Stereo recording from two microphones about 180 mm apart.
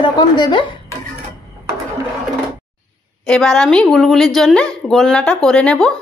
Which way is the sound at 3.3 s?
5° left (ahead or behind).